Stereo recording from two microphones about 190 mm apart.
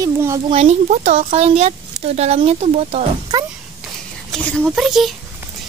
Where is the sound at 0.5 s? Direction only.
35° right (ahead or behind).